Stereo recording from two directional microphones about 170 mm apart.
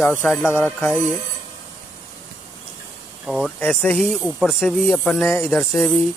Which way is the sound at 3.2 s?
5° right (ahead or behind).